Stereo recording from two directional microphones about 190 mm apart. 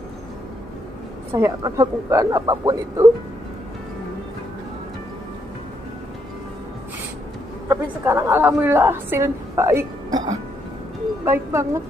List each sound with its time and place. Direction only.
1.3 s a woman's voice: 15° right (ahead or behind)
7.6 s a woman's voice: 15° right (ahead or behind)